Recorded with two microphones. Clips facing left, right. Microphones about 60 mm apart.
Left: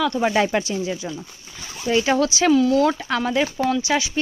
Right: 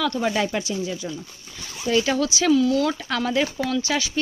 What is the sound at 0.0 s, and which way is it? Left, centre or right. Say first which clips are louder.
Speech: left 3 dB; centre.